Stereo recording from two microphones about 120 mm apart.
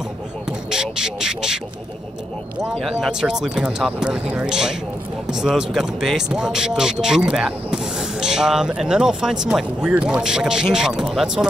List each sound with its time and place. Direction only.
0.5 s speech: 5° right (ahead or behind)
2.8 s speech: centre (ahead or behind)